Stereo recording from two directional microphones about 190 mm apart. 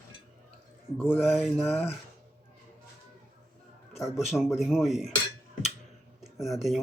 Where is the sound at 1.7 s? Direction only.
35° left (ahead or behind).